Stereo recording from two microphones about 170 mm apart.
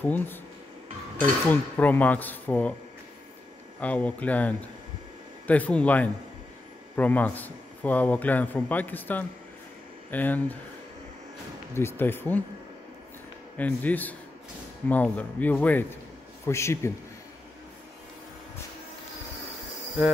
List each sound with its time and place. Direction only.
0.0 s speech: 10° left (ahead or behind)
1.5 s speech: 10° left (ahead or behind)
3.8 s speech: 10° left (ahead or behind)
11.7 s speech: 15° left (ahead or behind)
13.6 s speech: 10° left (ahead or behind)